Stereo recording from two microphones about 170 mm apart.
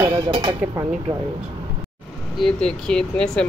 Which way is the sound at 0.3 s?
25° right (ahead or behind).